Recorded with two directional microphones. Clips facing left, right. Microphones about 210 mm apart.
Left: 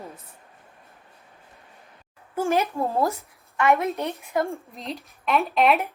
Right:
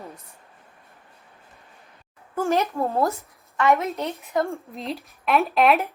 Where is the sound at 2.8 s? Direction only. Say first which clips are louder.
Right 1 dB; 25° left (ahead or behind).